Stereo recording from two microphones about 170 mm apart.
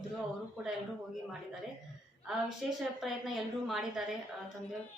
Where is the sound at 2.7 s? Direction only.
Centre (ahead or behind).